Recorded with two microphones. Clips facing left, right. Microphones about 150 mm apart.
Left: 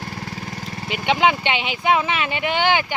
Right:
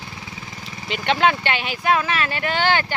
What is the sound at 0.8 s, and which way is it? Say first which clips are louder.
Speech: even; 10° left (ahead or behind).